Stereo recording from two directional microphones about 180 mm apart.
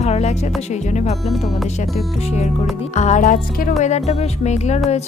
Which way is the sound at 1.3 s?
Centre (ahead or behind).